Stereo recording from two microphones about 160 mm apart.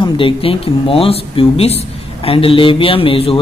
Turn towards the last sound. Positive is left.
turn(degrees=35)  # may be behind; listen again after turning